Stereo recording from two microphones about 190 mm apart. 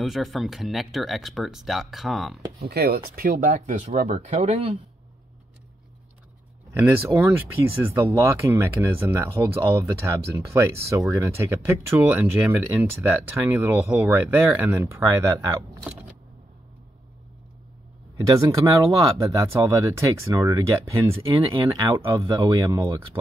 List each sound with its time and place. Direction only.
0.0 s speech: centre (ahead or behind)
2.6 s speech: 55° right (ahead or behind); by 4.8 s 30° right (ahead or behind)
6.7 s speech: 15° right (ahead or behind)
18.2 s speech: 15° right (ahead or behind)